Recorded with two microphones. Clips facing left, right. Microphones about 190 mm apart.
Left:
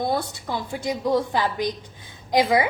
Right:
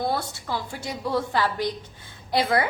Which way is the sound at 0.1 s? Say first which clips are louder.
Left 2 dB; 15° left (ahead or behind).